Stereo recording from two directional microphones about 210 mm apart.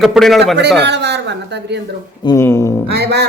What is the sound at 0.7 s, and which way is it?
Speech, 55° right (ahead or behind).